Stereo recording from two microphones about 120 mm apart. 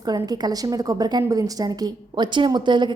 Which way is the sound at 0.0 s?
35° right (ahead or behind).